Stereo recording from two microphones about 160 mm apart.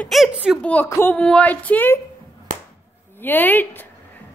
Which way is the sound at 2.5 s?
50° right (ahead or behind).